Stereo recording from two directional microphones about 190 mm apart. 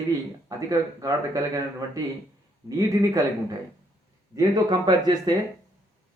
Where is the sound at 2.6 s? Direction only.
20° right (ahead or behind).